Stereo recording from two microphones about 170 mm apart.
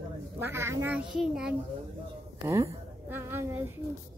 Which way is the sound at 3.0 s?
15° right (ahead or behind).